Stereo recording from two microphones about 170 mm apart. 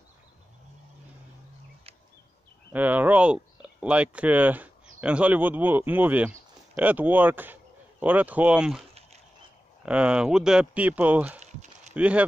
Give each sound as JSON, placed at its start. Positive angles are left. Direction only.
{"t": 2.7, "sound": "speech", "side_deg": -10}
{"t": 9.8, "sound": "speech", "side_deg": -5}
{"t": 11.3, "sound": "a sound", "side_deg": -45}
{"t": 11.9, "sound": "speech", "side_deg": -10}